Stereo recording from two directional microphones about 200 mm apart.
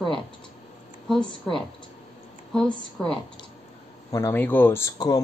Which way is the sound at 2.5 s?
5° left (ahead or behind).